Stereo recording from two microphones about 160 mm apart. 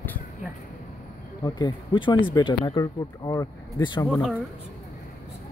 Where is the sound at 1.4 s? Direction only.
25° left (ahead or behind).